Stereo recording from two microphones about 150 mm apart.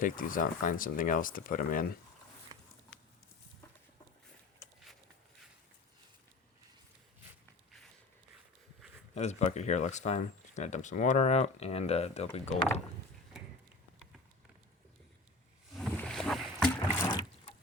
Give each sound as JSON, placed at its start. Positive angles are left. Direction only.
{"t": 0.0, "sound": "speech", "side_deg": 65}
{"t": 2.5, "sound": "a sound", "side_deg": -25}
{"t": 9.1, "sound": "speech", "side_deg": 50}
{"t": 15.7, "sound": "boat", "side_deg": 0}
{"t": 17.0, "sound": "trickle", "side_deg": 25}